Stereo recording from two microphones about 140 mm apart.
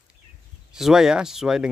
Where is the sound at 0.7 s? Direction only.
5° right (ahead or behind).